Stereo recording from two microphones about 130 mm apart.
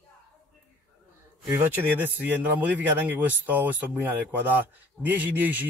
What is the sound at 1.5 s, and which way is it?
Speech, 15° right (ahead or behind).